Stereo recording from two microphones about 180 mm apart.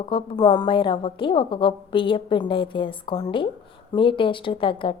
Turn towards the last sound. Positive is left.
turn(degrees=30)  # may be behind; listen again after turning